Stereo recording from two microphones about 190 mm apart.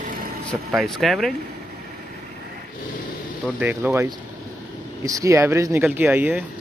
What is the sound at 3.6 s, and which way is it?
Speech, 10° right (ahead or behind).